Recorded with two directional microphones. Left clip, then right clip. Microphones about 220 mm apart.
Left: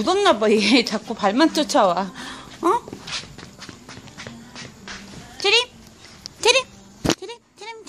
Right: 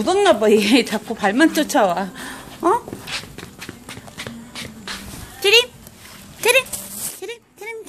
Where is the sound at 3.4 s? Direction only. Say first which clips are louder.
Right 4 dB; 35° right (ahead or behind).